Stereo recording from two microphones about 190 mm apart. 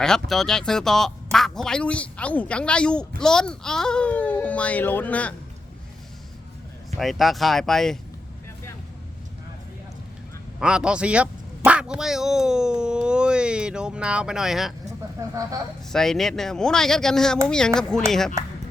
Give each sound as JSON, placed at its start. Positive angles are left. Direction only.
{"t": 0.0, "sound": "a child's voice", "side_deg": 0}
{"t": 6.9, "sound": "speech", "side_deg": 0}
{"t": 10.6, "sound": "speech", "side_deg": -5}
{"t": 15.2, "sound": "speech", "side_deg": -15}
{"t": 15.9, "sound": "speech", "side_deg": 0}